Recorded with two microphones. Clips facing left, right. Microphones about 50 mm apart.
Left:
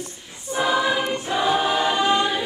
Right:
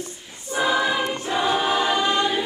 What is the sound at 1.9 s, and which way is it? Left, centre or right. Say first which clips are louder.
Choir: left 1 dB; centre.